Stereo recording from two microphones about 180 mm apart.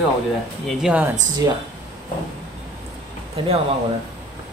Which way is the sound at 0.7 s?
5° right (ahead or behind).